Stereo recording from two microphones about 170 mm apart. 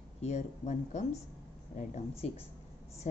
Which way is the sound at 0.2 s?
40° left (ahead or behind).